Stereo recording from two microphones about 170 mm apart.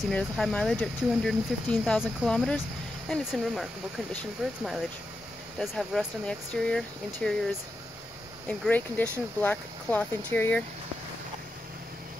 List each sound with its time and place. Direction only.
0.1 s speech: 5° left (ahead or behind)
8.5 s speech: 10° left (ahead or behind)